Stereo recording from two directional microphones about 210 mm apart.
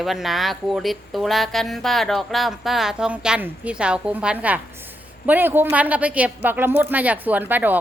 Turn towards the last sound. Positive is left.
turn(degrees=-10)  # may be behind; listen again after turning